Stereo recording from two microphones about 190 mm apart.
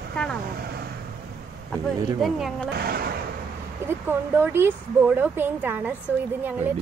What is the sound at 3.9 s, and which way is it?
Speech, 10° right (ahead or behind).